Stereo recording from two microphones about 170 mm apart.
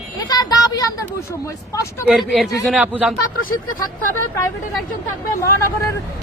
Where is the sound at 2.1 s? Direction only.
Centre (ahead or behind).